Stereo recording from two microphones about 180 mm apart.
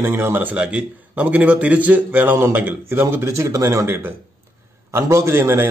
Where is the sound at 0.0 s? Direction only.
10° right (ahead or behind).